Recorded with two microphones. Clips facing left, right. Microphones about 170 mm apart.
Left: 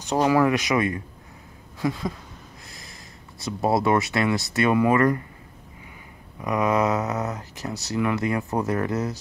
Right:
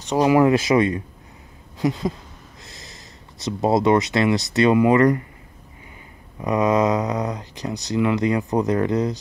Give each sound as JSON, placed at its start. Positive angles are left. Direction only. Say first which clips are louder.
{"t": 0.2, "sound": "speech", "louder": "right 4 dB", "side_deg": -20}
{"t": 2.7, "sound": "snort", "louder": "right 2 dB", "side_deg": -25}
{"t": 3.4, "sound": "speech", "louder": "right 4 dB", "side_deg": -20}
{"t": 6.4, "sound": "speech", "louder": "right 3 dB", "side_deg": -20}